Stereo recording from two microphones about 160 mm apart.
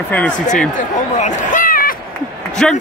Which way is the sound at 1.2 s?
55° left (ahead or behind).